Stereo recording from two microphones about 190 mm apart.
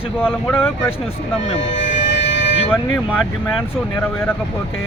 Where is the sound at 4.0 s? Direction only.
10° left (ahead or behind).